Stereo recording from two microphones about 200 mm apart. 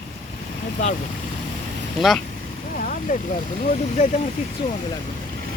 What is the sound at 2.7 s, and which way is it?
Vehicle, 40° left (ahead or behind).